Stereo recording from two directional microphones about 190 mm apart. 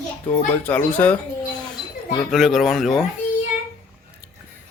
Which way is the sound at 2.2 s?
Centre (ahead or behind).